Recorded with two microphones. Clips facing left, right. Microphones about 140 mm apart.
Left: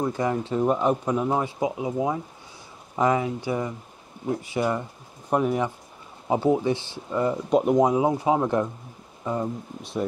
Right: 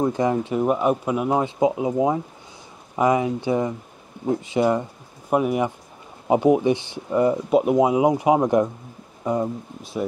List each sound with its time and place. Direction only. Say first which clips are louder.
0.0 s speech: right 4 dB; 20° right (ahead or behind)
1.4 s speech: right 6 dB; 25° right (ahead or behind)
5.3 s speech: right 3 dB; 10° right (ahead or behind)